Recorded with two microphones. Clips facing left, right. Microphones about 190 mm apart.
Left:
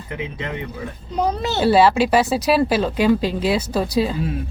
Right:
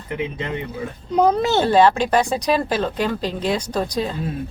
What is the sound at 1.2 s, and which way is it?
Speech, 50° right (ahead or behind).